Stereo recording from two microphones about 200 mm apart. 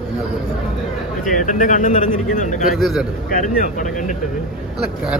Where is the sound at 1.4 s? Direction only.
40° left (ahead or behind).